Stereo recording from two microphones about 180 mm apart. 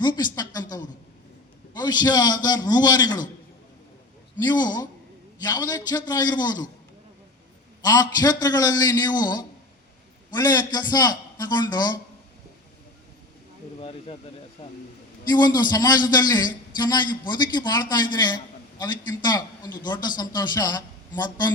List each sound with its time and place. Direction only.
0.3 s a sound: 20° left (ahead or behind)
1.7 s a man's voice: 25° left (ahead or behind)
4.4 s a man's voice: 25° left (ahead or behind)
7.8 s a man's voice: 20° left (ahead or behind)
14.6 s speech: 35° left (ahead or behind)
15.3 s a man's voice: 25° left (ahead or behind)